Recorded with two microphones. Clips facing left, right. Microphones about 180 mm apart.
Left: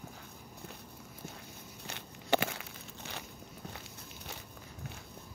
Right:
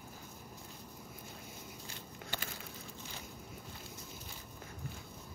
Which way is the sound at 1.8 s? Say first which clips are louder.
Left 2 dB; 70° left (ahead or behind).